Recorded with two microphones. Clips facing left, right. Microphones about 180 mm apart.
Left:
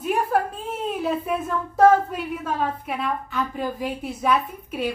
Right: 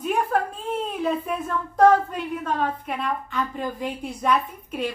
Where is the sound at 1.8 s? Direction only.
5° left (ahead or behind).